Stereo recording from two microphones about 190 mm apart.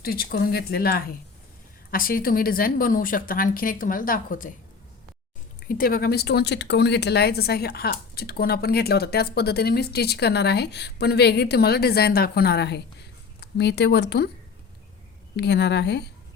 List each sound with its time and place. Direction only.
0.0 s a woman's voice: 55° left (ahead or behind)
5.6 s speech: 50° left (ahead or behind)
15.4 s speech: 60° left (ahead or behind)